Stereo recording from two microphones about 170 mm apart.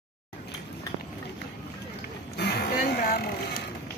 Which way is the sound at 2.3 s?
70° left (ahead or behind).